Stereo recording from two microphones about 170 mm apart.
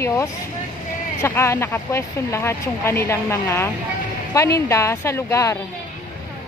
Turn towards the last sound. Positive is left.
turn(degrees=15)  # may be behind; listen again after turning